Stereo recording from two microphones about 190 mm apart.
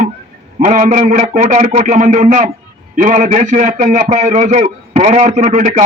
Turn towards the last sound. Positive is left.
turn(degrees=-40)  # may be behind; listen again after turning